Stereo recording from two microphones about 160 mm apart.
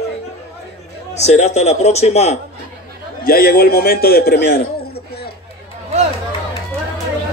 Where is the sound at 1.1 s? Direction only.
45° left (ahead or behind).